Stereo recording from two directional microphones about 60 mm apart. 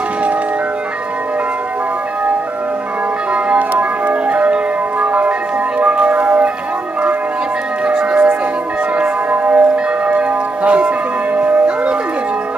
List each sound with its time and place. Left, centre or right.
3.4 s music: right
5.8 s bell: right
7.8 s music: centre
8.9 s church bell: right
11.3 s music: right